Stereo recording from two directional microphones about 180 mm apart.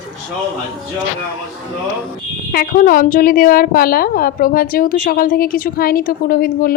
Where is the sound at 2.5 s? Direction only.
50° left (ahead or behind).